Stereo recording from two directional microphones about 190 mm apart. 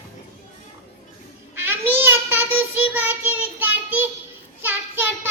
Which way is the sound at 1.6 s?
10° right (ahead or behind).